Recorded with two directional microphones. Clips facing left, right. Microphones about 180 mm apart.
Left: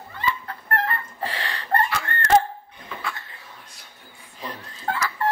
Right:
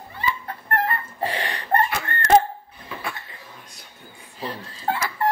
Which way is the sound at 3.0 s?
20° right (ahead or behind).